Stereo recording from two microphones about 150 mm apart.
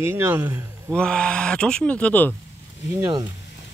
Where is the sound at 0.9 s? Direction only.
5° left (ahead or behind).